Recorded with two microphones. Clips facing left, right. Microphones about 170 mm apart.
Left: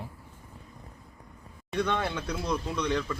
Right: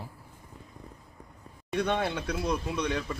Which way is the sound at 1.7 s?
15° right (ahead or behind).